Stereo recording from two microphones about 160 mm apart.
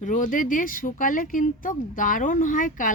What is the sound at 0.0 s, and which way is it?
Speech, 55° left (ahead or behind).